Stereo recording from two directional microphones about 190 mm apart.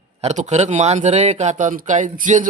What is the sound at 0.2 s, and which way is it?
Speech, 40° right (ahead or behind).